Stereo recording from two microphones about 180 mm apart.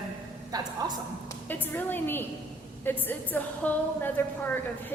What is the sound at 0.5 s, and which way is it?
Speech, 20° right (ahead or behind).